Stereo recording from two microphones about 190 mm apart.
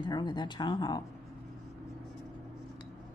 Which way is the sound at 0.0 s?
25° left (ahead or behind).